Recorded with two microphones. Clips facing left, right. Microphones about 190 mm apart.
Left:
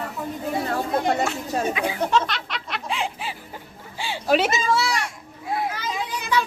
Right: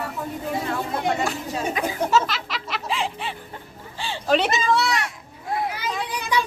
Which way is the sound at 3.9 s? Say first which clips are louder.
Left 1 dB; 10° left (ahead or behind).